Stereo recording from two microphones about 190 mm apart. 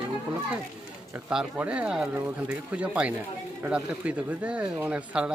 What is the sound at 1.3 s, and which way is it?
Speech, 5° right (ahead or behind).